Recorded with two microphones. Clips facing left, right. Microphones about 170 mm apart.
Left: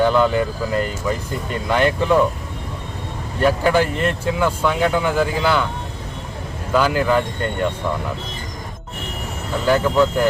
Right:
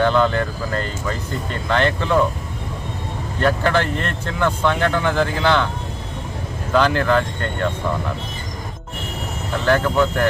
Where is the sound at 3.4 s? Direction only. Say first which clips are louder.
Left 2 dB; 10° left (ahead or behind).